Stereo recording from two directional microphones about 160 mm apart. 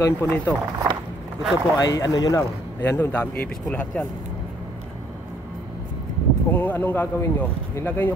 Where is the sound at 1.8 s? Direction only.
20° left (ahead or behind).